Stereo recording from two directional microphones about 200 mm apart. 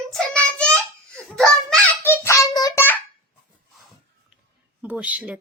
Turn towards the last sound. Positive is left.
turn(degrees=-5)  # may be behind; listen again after turning